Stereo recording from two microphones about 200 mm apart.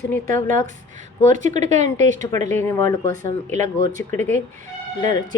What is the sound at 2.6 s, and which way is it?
Speech, 10° left (ahead or behind).